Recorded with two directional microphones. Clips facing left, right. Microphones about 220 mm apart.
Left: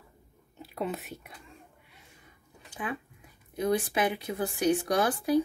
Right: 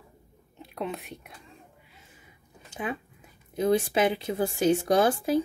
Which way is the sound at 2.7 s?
20° right (ahead or behind).